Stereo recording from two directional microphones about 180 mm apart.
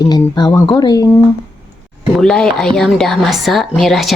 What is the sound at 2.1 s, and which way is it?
A woman's voice, 5° left (ahead or behind).